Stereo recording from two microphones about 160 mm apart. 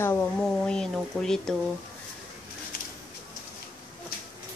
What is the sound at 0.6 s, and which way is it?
Speech, 5° left (ahead or behind).